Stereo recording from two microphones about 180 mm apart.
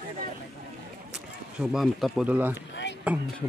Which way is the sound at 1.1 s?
5° right (ahead or behind).